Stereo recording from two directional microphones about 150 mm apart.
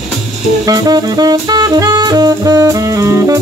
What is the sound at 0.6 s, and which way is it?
Saxophone, 25° right (ahead or behind).